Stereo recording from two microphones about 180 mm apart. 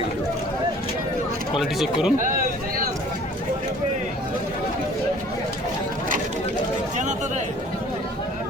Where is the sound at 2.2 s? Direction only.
50° right (ahead or behind).